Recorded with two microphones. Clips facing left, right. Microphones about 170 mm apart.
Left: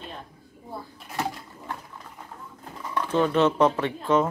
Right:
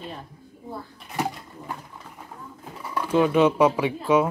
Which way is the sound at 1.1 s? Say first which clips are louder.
Right 2 dB; 15° right (ahead or behind).